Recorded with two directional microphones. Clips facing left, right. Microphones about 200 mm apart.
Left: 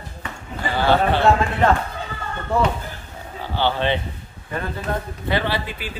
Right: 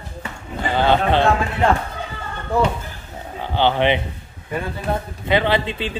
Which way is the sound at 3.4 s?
20° right (ahead or behind).